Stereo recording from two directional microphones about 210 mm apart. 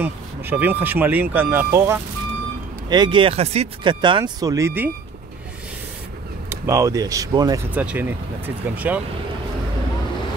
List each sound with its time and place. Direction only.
0.0 s speech: 10° right (ahead or behind)
6.5 s speech: 15° right (ahead or behind)